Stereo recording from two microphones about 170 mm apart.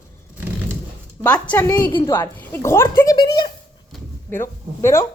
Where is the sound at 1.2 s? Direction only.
10° left (ahead or behind); by 3.5 s 25° left (ahead or behind).